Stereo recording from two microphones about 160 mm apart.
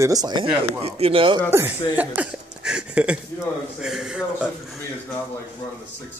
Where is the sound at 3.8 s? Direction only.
5° right (ahead or behind).